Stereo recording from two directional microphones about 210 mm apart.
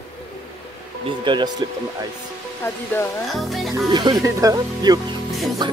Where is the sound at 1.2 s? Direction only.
20° right (ahead or behind).